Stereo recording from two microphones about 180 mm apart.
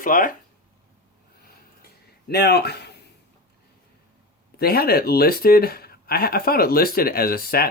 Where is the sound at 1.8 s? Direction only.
65° left (ahead or behind).